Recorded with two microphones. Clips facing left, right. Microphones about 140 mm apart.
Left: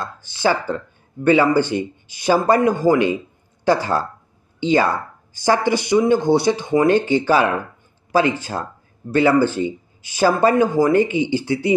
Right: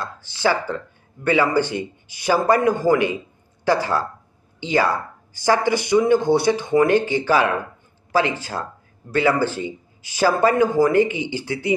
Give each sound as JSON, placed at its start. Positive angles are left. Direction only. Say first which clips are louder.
{"t": 0.0, "sound": "speech", "louder": "left 1 dB", "side_deg": 20}